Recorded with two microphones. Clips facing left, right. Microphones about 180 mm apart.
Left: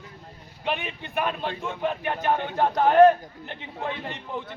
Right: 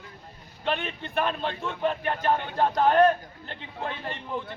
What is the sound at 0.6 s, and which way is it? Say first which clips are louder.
A man's voice: even; 10° left (ahead or behind).